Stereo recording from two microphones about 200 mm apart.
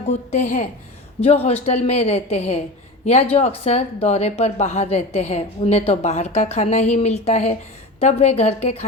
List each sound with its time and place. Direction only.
0.3 s speech: 35° left (ahead or behind)